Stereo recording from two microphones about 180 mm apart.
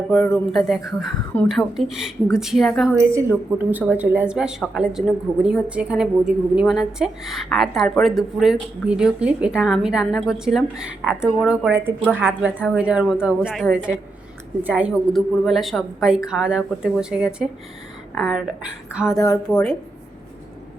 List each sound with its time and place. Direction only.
0.1 s a woman's voice: 5° left (ahead or behind)
2.9 s a woman's voice: 15° right (ahead or behind)
19.1 s speech: 20° left (ahead or behind)
19.5 s a woman's voice: 5° left (ahead or behind)